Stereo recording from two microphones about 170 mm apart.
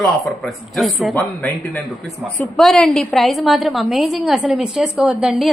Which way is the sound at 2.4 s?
Centre (ahead or behind).